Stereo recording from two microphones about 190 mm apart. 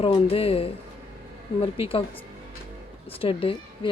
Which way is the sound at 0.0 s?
30° left (ahead or behind).